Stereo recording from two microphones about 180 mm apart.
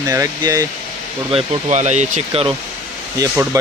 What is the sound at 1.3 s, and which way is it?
Speech, 40° right (ahead or behind).